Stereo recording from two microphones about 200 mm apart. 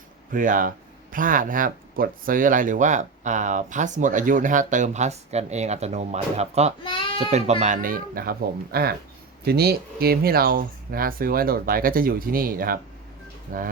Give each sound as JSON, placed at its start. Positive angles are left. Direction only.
{"t": 0.3, "sound": "speech", "side_deg": -40}
{"t": 6.8, "sound": "bleat", "side_deg": 25}
{"t": 7.3, "sound": "speech", "side_deg": -35}